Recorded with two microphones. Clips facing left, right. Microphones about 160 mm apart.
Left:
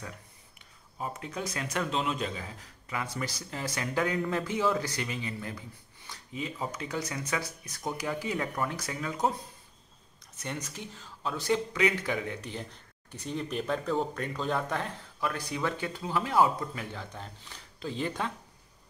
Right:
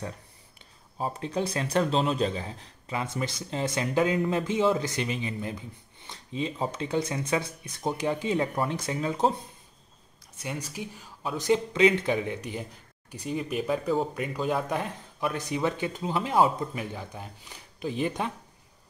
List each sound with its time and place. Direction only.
0.9 s speech: 30° right (ahead or behind)
10.4 s speech: 10° right (ahead or behind)